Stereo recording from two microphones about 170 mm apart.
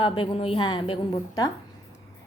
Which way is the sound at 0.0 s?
30° left (ahead or behind).